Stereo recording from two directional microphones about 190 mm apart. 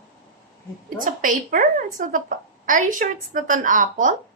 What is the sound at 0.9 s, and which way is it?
A woman's voice, 45° right (ahead or behind).